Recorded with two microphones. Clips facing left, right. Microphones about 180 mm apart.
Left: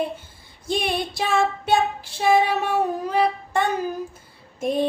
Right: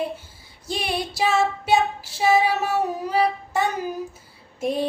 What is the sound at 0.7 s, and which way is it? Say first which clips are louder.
Female singing: left 3 dB; 55° left (ahead or behind).